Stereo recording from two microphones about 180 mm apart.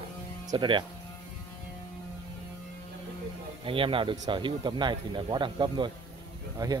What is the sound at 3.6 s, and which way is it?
Speech, 30° right (ahead or behind).